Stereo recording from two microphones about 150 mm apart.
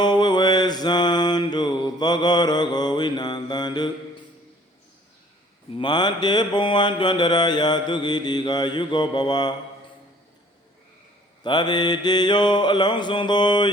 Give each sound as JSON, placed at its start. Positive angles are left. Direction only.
{"t": 0.0, "sound": "mantra", "side_deg": 30}
{"t": 5.7, "sound": "mantra", "side_deg": 30}
{"t": 11.4, "sound": "mantra", "side_deg": 30}